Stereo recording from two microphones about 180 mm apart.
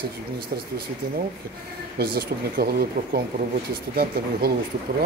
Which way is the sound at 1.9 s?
60° right (ahead or behind).